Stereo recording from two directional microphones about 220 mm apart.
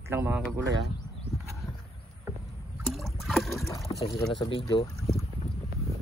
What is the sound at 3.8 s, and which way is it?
Pour, 25° left (ahead or behind).